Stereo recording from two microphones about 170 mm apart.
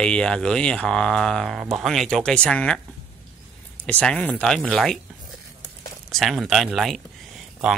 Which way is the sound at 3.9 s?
5° left (ahead or behind).